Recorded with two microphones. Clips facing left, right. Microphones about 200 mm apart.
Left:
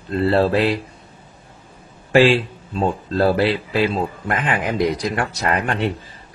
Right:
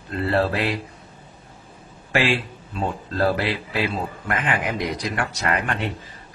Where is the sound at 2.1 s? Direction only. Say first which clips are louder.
Left 8 dB; 30° left (ahead or behind).